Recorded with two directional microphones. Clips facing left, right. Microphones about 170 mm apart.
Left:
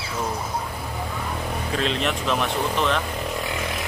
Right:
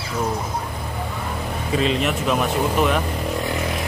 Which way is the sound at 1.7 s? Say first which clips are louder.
Right 5 dB; 5° right (ahead or behind).